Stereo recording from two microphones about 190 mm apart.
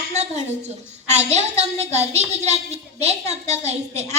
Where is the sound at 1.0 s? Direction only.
35° right (ahead or behind).